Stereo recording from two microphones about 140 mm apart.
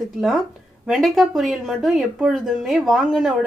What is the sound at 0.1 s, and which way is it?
Speech, centre (ahead or behind).